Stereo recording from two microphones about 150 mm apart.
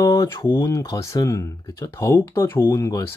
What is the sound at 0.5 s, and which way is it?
Speech, 20° left (ahead or behind).